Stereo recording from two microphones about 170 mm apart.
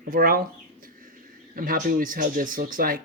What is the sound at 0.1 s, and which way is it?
Speech, 60° right (ahead or behind).